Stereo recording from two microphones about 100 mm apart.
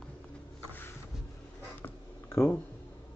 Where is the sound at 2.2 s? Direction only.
25° left (ahead or behind).